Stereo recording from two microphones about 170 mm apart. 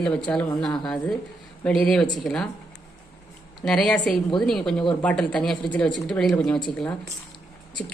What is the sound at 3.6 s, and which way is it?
A woman's voice, 5° left (ahead or behind).